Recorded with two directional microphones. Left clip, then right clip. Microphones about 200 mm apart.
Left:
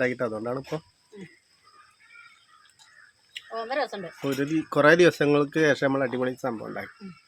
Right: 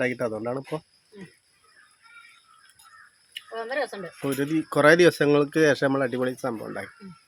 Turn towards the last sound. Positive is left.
turn(degrees=-5)  # may be behind; listen again after turning